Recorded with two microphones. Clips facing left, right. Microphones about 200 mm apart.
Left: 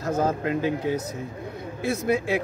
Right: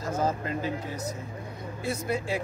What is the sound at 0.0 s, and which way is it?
Speech, 65° left (ahead or behind).